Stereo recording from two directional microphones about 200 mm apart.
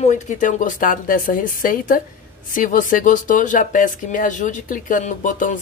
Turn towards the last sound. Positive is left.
turn(degrees=40)  # may be behind; listen again after turning